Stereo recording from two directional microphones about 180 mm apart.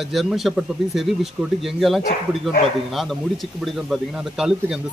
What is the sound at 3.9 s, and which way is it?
Speech, 5° right (ahead or behind).